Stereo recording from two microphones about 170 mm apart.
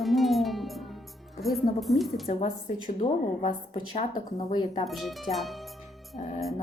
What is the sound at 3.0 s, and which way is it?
A woman's voice, 30° left (ahead or behind).